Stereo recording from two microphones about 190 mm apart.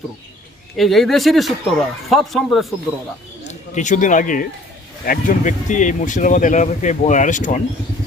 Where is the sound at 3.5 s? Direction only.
40° left (ahead or behind).